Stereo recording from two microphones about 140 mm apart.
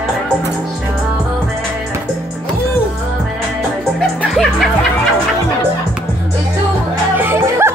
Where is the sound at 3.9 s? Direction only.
Centre (ahead or behind).